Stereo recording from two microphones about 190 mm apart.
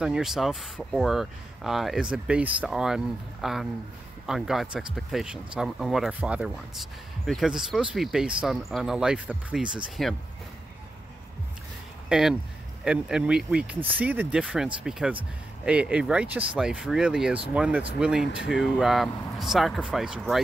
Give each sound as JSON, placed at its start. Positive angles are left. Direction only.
{"t": 0.0, "sound": "speech", "side_deg": 0}
{"t": 12.1, "sound": "speech", "side_deg": 0}